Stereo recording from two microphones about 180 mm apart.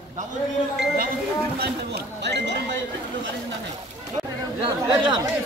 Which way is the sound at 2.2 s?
70° right (ahead or behind).